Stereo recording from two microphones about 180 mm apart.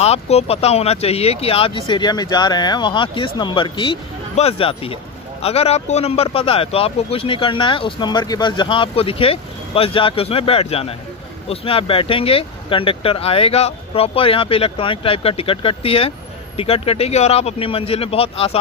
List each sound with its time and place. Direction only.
0.0 s speech: 35° left (ahead or behind)